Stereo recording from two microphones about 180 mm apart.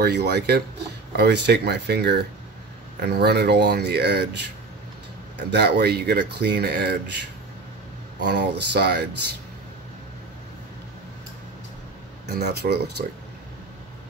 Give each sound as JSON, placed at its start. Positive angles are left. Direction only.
{"t": 0.0, "sound": "speech", "side_deg": -65}
{"t": 5.5, "sound": "speech", "side_deg": -65}
{"t": 12.4, "sound": "speech", "side_deg": -65}